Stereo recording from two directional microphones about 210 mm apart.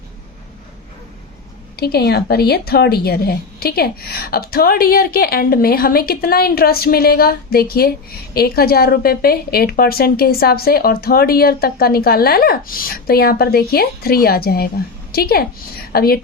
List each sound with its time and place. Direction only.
1.8 s a woman's voice: 50° left (ahead or behind)